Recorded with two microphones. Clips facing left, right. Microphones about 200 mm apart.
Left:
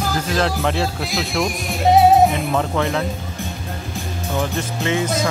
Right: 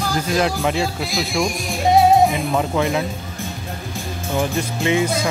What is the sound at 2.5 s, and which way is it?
Speech, 10° right (ahead or behind).